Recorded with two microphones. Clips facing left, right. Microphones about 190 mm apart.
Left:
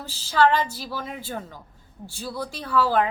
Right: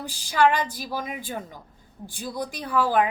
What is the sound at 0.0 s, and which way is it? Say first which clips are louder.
A woman's voice: left 1 dB; 15° right (ahead or behind).